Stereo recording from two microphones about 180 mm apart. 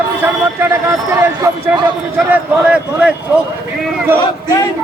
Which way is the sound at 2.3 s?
5° right (ahead or behind).